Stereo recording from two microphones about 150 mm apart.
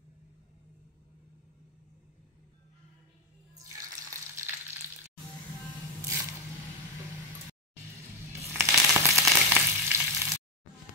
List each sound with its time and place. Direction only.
3.6 s frying: 20° right (ahead or behind)
8.5 s frying: 20° right (ahead or behind)